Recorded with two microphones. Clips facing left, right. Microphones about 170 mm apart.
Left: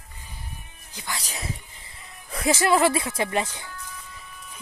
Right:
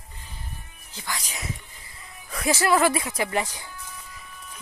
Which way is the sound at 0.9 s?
20° left (ahead or behind).